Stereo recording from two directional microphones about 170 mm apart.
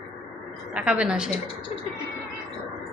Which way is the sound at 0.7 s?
5° right (ahead or behind).